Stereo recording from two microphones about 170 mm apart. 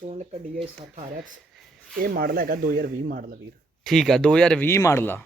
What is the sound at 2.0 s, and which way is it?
Speech, 60° right (ahead or behind).